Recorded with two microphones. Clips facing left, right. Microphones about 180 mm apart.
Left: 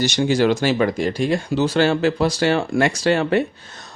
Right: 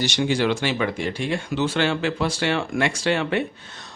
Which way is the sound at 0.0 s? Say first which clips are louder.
Left 4 dB; 40° left (ahead or behind).